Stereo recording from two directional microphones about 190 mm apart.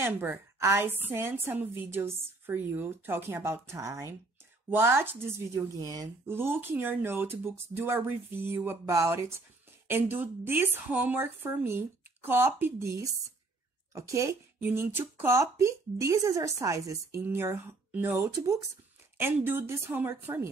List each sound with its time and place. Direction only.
0.0 s speech: 10° right (ahead or behind)